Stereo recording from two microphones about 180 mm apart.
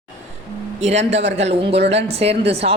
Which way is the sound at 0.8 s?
35° right (ahead or behind).